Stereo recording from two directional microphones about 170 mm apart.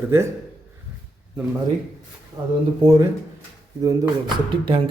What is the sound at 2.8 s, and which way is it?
Speech, 20° right (ahead or behind).